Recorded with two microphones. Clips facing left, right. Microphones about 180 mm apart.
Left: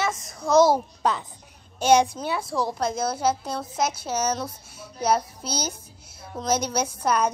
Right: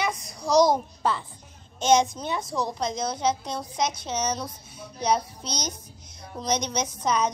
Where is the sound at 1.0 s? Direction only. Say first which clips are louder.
Left 1 dB; 15° left (ahead or behind).